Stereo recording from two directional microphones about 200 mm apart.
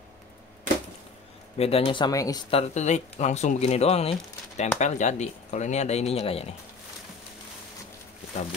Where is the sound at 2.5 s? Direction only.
35° left (ahead or behind).